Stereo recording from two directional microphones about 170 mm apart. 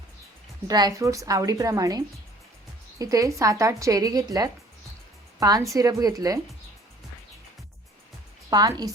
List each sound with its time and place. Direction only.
0.7 s a woman's voice: 20° right (ahead or behind)
8.4 s a woman's voice: 25° right (ahead or behind)